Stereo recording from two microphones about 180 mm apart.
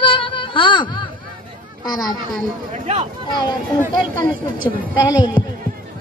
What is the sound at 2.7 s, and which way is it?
Speech, 40° right (ahead or behind).